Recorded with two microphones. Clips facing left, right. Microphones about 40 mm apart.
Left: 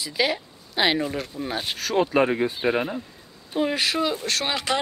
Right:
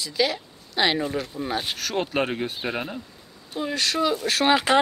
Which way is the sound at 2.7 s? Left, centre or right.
Left.